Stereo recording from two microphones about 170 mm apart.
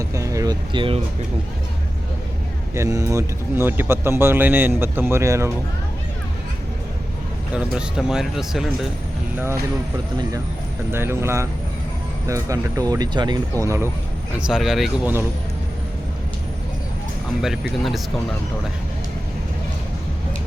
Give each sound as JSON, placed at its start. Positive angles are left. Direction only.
{"t": 0.0, "sound": "speech", "side_deg": -20}
{"t": 2.7, "sound": "speech", "side_deg": -15}
{"t": 7.5, "sound": "speech", "side_deg": -5}
{"t": 10.9, "sound": "speech", "side_deg": -15}
{"t": 14.3, "sound": "speech", "side_deg": -5}
{"t": 17.4, "sound": "speech", "side_deg": 0}